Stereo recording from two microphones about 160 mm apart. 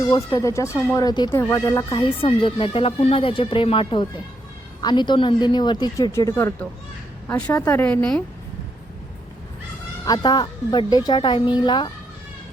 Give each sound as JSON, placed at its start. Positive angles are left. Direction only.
{"t": 0.0, "sound": "speech", "side_deg": 25}
{"t": 0.7, "sound": "speech", "side_deg": -5}
{"t": 0.9, "sound": "speech", "side_deg": 25}
{"t": 1.3, "sound": "a woman's voice", "side_deg": 15}
{"t": 10.1, "sound": "speech", "side_deg": 25}